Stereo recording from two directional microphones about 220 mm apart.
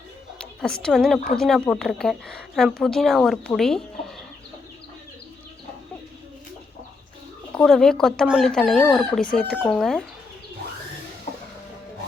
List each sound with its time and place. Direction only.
0.3 s a woman's voice: 5° left (ahead or behind)
7.5 s speech: centre (ahead or behind)
11.3 s music: 30° left (ahead or behind)